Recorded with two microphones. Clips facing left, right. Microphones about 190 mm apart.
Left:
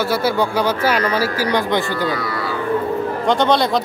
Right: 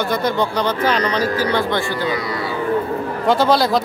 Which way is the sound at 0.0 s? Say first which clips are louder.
Left 1 dB; 5° left (ahead or behind).